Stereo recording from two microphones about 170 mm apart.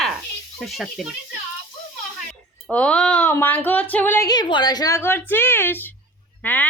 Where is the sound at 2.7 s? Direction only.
5° left (ahead or behind).